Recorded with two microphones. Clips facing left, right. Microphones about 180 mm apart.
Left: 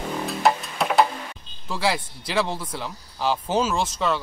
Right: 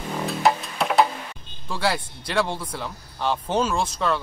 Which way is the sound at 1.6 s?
Centre (ahead or behind).